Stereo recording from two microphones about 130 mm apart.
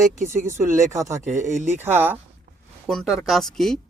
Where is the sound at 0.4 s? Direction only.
20° right (ahead or behind).